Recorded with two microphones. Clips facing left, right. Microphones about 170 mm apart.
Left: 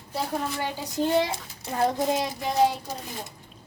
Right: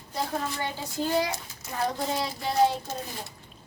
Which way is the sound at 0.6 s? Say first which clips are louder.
Left 3 dB; 20° left (ahead or behind).